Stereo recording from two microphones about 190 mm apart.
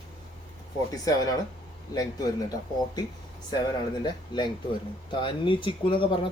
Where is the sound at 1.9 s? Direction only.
20° left (ahead or behind).